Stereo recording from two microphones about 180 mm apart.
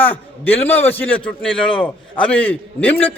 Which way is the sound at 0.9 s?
10° left (ahead or behind).